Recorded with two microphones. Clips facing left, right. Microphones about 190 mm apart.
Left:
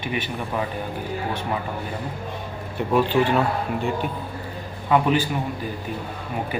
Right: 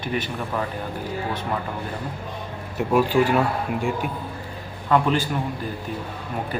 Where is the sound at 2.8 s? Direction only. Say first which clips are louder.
Right 1 dB; 10° right (ahead or behind).